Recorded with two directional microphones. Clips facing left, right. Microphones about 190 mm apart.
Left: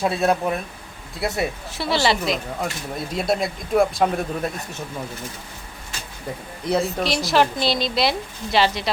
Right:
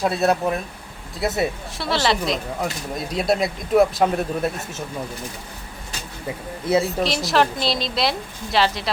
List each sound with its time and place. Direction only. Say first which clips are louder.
0.0 s speech: right 1 dB; centre (ahead or behind)
6.7 s speech: right 2 dB; centre (ahead or behind)